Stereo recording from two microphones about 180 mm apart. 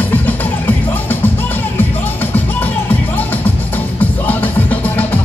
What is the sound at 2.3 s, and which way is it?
Music, 10° left (ahead or behind).